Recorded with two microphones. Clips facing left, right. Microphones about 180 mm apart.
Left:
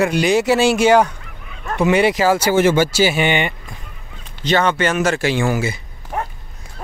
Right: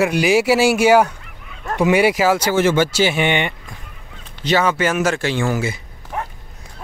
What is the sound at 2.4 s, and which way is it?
Speech, 10° left (ahead or behind).